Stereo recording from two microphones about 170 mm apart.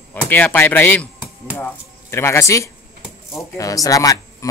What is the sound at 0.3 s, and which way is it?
Speech, 10° left (ahead or behind).